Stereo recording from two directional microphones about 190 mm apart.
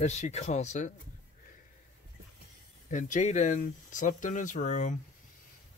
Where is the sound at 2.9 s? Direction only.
40° left (ahead or behind).